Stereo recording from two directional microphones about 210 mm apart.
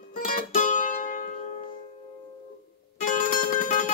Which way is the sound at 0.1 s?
45° left (ahead or behind).